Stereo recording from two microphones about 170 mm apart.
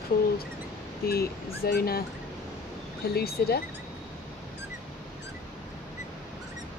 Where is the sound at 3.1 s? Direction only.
65° left (ahead or behind).